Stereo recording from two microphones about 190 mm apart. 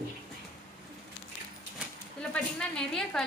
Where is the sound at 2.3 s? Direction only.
5° left (ahead or behind).